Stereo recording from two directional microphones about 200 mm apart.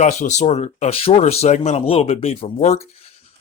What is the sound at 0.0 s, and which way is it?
Speech, 35° left (ahead or behind).